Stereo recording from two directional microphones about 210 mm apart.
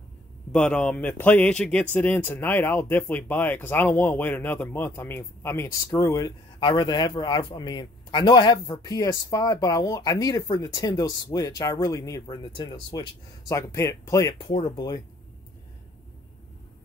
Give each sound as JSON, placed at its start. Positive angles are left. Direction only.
{"t": 0.5, "sound": "speech", "side_deg": 5}